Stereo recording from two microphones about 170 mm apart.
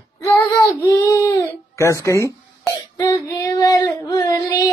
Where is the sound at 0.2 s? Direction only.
20° left (ahead or behind).